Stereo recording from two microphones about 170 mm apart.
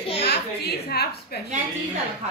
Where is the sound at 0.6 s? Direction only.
70° left (ahead or behind).